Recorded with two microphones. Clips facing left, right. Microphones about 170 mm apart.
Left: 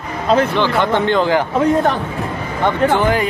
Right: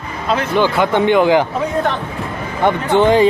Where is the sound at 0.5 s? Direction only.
10° right (ahead or behind).